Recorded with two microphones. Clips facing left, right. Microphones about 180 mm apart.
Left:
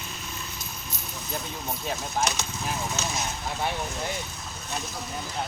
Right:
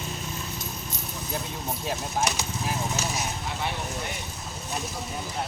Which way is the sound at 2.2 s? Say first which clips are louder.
Right 1 dB; 10° right (ahead or behind).